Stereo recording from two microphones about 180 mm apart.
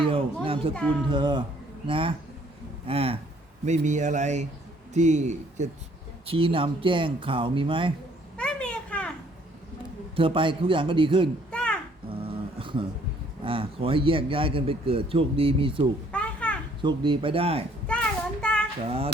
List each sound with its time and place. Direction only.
0.0 s speech: 30° right (ahead or behind)
0.7 s speech: 5° left (ahead or behind)
1.0 s a man's voice: 25° right (ahead or behind)
6.2 s a man's voice: 30° right (ahead or behind)
8.4 s a sound: 5° left (ahead or behind)
10.2 s a man's voice: 30° right (ahead or behind)
11.5 s music: 5° left (ahead or behind)
12.0 s a sound: 30° right (ahead or behind)
13.4 s a man's voice: 30° right (ahead or behind)
16.1 s children playing: 5° left (ahead or behind)
16.8 s speech: 25° right (ahead or behind)
17.8 s child singing: 5° left (ahead or behind)
18.9 s speech: 30° right (ahead or behind)